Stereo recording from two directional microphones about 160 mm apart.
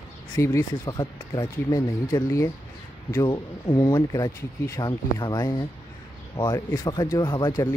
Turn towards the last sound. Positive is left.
turn(degrees=20)  # may be behind; listen again after turning